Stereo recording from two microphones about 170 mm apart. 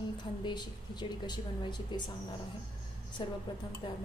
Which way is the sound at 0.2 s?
25° left (ahead or behind).